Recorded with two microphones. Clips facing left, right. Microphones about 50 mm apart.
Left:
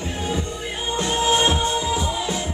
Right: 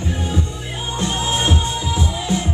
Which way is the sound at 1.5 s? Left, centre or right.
Centre.